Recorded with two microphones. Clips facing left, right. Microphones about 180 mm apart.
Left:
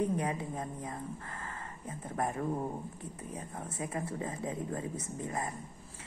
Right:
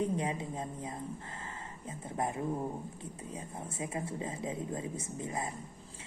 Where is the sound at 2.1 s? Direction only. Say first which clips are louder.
Left 1 dB; 10° right (ahead or behind).